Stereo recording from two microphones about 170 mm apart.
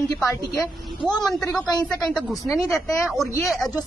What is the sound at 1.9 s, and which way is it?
Speech, 5° left (ahead or behind).